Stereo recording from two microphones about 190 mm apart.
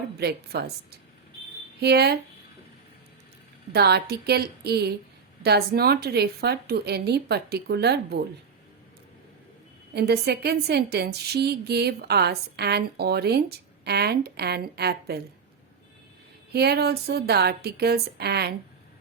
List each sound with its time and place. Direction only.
0.2 s a woman's voice: 60° right (ahead or behind)
3.7 s a woman's voice: 60° right (ahead or behind)
9.9 s a woman's voice: 60° right (ahead or behind)
16.5 s a woman's voice: 60° right (ahead or behind)